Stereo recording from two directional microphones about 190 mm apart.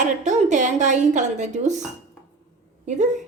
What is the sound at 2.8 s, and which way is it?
Speech, 40° right (ahead or behind).